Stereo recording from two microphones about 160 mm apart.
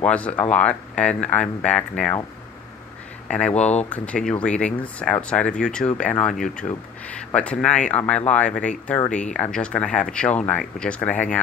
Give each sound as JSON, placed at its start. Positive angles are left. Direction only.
{"t": 0.0, "sound": "speech", "side_deg": 10}
{"t": 3.3, "sound": "speech", "side_deg": 5}
{"t": 3.5, "sound": "speech", "side_deg": 45}
{"t": 3.9, "sound": "speech", "side_deg": 5}